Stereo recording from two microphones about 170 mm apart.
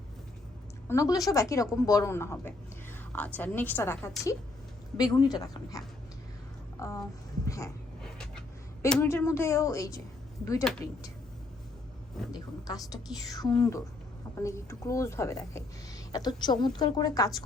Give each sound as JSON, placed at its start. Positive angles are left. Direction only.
{"t": 0.9, "sound": "speech", "side_deg": 20}
{"t": 7.4, "sound": "dog", "side_deg": 20}
{"t": 8.0, "sound": "a sound", "side_deg": 5}
{"t": 9.0, "sound": "speech", "side_deg": 15}
{"t": 12.3, "sound": "speech", "side_deg": 20}